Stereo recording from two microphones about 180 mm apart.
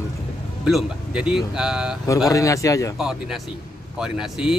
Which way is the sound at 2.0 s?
20° left (ahead or behind).